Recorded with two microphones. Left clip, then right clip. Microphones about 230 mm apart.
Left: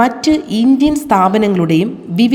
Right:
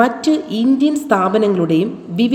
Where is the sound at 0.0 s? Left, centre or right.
Left.